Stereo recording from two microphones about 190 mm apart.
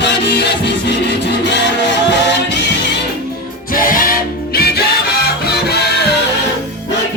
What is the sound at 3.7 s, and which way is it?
Music, 45° left (ahead or behind).